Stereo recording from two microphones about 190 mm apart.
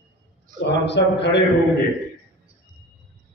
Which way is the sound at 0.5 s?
65° left (ahead or behind).